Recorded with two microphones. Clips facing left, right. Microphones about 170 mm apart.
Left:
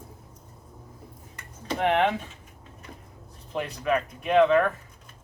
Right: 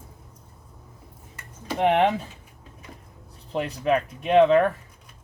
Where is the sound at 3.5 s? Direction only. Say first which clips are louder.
Right 3 dB; 30° right (ahead or behind).